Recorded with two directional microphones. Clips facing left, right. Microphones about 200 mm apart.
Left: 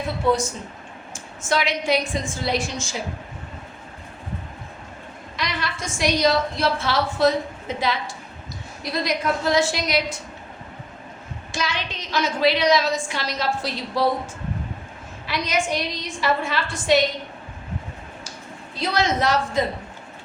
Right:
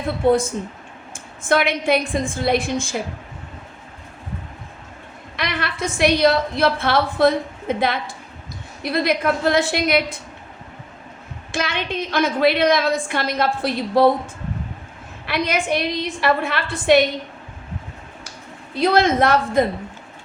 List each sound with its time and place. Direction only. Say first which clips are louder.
0.3 s a woman's voice: right 5 dB; 55° right (ahead or behind)
5.4 s a woman's voice: right 4 dB; 60° right (ahead or behind)
11.5 s a woman's voice: right 5 dB; 60° right (ahead or behind)
15.3 s a woman's voice: right 3 dB; 60° right (ahead or behind)
18.8 s a woman's voice: right 6 dB; 55° right (ahead or behind)